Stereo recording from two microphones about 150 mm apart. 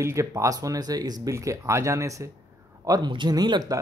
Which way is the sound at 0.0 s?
20° right (ahead or behind).